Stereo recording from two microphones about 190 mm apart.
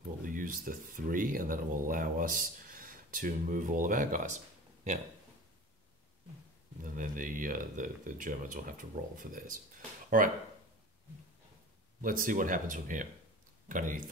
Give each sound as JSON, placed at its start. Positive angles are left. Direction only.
{"t": 0.2, "sound": "speech", "side_deg": -45}
{"t": 6.8, "sound": "speech", "side_deg": -45}
{"t": 12.0, "sound": "speech", "side_deg": -45}